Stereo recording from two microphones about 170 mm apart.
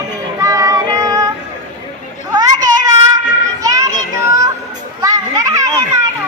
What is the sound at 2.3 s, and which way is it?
Children playing, 20° right (ahead or behind).